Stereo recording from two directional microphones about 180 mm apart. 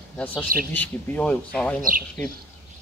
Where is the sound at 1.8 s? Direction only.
50° right (ahead or behind).